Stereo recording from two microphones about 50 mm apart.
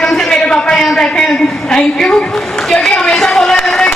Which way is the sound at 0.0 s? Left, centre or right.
Centre.